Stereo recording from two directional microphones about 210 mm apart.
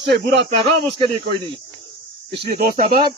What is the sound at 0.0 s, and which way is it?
Speech, 55° right (ahead or behind).